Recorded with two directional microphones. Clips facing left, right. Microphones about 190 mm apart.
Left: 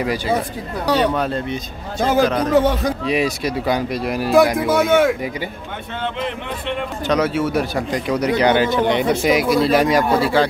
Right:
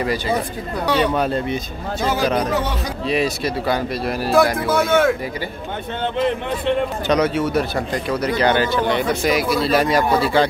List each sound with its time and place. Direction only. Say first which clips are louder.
0.0 s a man's voice: left 1 dB; 10° left (ahead or behind)
1.1 s speech: right 1 dB; 5° right (ahead or behind)
2.0 s a man's voice: left 3 dB; 50° left (ahead or behind)
3.1 s a man's voice: right 2 dB; 15° left (ahead or behind)
6.2 s speech: right 5 dB; 35° right (ahead or behind)
7.1 s a man's voice: left 1 dB; 5° left (ahead or behind)